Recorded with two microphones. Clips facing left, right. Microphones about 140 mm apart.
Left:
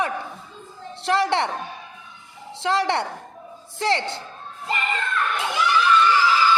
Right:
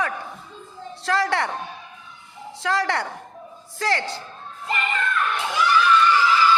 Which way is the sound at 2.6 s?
25° left (ahead or behind).